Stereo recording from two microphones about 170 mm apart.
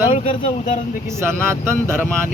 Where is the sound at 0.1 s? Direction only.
35° left (ahead or behind).